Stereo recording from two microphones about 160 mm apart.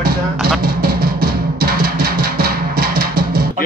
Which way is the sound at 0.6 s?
70° right (ahead or behind).